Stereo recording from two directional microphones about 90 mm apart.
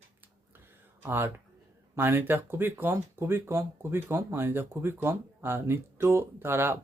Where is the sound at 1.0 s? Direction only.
25° right (ahead or behind).